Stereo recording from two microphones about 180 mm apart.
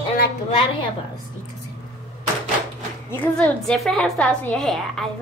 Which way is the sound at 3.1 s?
10° left (ahead or behind).